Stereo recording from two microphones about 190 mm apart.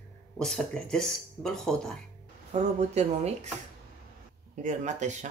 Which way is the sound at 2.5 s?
35° right (ahead or behind).